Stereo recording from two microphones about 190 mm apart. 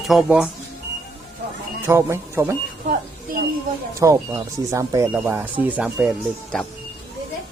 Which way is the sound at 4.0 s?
15° right (ahead or behind).